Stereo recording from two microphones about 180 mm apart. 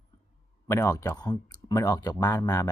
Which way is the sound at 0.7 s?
15° left (ahead or behind).